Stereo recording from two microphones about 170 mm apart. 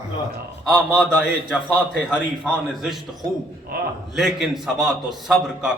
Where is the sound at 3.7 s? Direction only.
60° right (ahead or behind).